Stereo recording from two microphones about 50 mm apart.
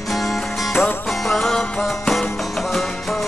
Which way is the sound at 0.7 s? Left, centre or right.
Left.